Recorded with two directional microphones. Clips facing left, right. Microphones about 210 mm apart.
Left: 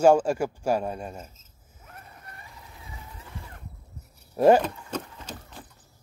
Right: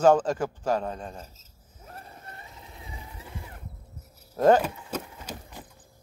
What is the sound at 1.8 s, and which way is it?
Vehicle, 30° right (ahead or behind).